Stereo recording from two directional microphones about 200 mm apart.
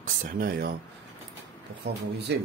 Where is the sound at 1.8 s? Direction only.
55° right (ahead or behind).